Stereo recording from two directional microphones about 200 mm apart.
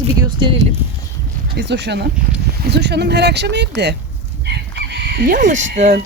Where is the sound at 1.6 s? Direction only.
60° right (ahead or behind).